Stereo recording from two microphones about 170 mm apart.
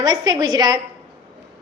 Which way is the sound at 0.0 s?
25° right (ahead or behind).